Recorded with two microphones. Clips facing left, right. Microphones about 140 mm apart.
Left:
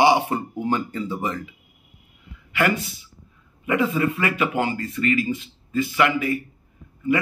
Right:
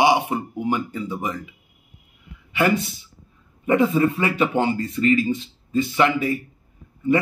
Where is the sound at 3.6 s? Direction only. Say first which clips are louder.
Right 4 dB; 35° right (ahead or behind).